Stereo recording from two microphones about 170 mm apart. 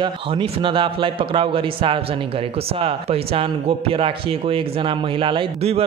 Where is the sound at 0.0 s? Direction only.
30° right (ahead or behind).